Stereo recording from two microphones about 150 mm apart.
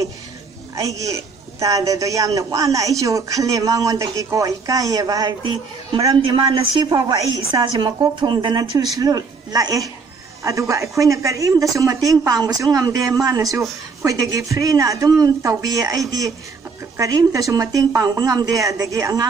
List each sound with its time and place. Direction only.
0.7 s a woman's voice: 20° right (ahead or behind)